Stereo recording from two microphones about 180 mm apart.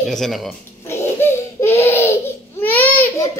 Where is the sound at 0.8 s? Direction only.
15° left (ahead or behind).